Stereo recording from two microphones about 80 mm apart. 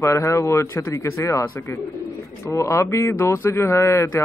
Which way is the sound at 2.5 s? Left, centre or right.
Left.